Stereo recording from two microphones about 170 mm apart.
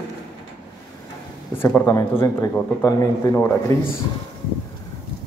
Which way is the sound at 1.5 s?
15° left (ahead or behind).